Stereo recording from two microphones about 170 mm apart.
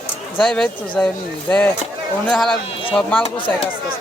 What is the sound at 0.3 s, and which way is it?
Speech, centre (ahead or behind).